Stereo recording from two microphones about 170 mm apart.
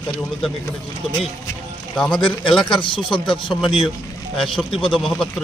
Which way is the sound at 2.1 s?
30° left (ahead or behind).